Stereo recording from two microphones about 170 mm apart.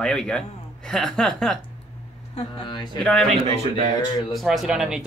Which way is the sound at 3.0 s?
5° left (ahead or behind).